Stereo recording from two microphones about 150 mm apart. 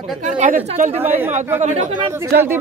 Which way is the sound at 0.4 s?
55° right (ahead or behind).